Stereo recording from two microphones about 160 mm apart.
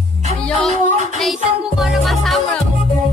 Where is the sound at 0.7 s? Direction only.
50° right (ahead or behind).